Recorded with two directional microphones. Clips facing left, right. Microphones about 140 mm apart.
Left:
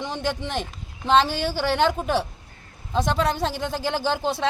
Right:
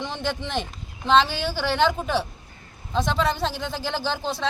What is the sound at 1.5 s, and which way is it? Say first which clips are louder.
Speech: even; 10° left (ahead or behind).